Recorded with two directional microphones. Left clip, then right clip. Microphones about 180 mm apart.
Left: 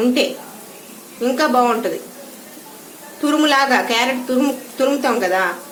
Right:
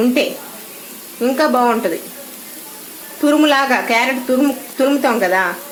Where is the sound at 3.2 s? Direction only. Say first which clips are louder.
Right 2 dB; 35° right (ahead or behind).